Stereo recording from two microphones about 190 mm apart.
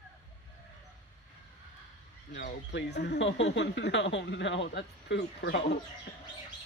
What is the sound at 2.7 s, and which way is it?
Speech, 60° left (ahead or behind).